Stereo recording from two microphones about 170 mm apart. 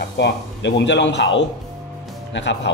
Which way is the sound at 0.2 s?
90° left.